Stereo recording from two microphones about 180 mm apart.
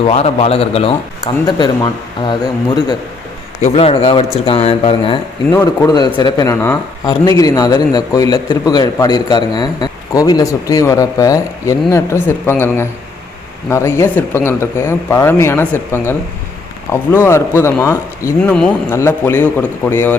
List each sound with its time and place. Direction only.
0.0 s a man's voice: 35° left (ahead or behind)
5.5 s a man's voice: 15° left (ahead or behind)
18.5 s speech: 5° left (ahead or behind)